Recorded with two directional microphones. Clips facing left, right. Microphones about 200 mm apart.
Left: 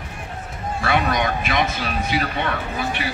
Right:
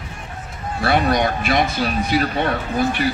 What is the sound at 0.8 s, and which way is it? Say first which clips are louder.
Speech: right 4 dB; 35° right (ahead or behind).